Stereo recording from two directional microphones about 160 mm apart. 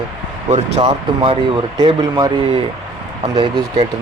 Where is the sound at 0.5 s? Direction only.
40° right (ahead or behind).